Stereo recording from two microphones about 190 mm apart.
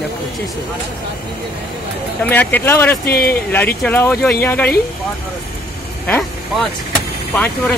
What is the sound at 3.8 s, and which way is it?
Speech, 10° left (ahead or behind).